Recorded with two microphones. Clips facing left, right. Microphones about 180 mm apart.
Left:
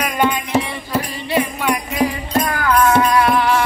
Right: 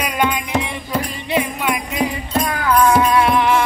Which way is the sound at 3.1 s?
20° right (ahead or behind).